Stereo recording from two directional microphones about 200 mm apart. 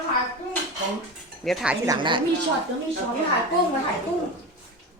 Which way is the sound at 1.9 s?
25° right (ahead or behind).